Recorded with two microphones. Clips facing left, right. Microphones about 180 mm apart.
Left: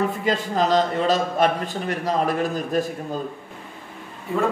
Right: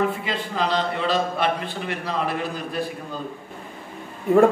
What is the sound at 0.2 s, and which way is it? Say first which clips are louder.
A man's voice: left 4 dB; 45° left (ahead or behind).